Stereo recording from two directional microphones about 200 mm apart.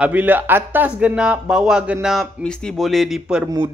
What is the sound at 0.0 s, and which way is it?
A man's voice, 10° right (ahead or behind).